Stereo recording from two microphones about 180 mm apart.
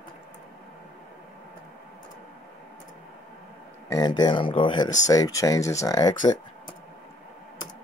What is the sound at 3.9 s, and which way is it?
Speech, 25° left (ahead or behind).